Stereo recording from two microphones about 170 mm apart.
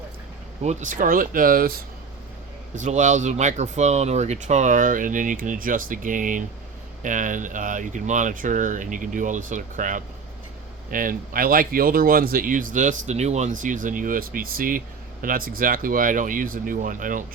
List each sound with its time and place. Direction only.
0.6 s speech: 45° right (ahead or behind)
2.7 s speech: 45° right (ahead or behind)